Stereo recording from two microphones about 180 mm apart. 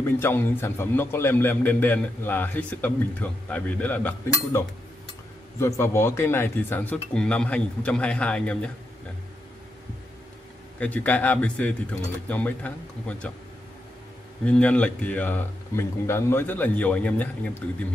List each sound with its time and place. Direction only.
0.0 s a man's voice: 10° left (ahead or behind)
10.8 s a man's voice: 10° left (ahead or behind)
14.4 s a man's voice: 5° left (ahead or behind)